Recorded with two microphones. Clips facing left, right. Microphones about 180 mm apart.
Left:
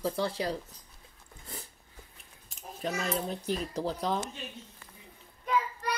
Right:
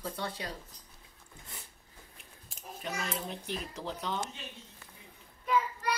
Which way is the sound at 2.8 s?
35° left (ahead or behind).